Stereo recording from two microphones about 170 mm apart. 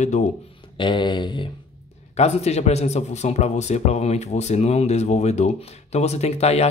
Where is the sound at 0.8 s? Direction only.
25° left (ahead or behind).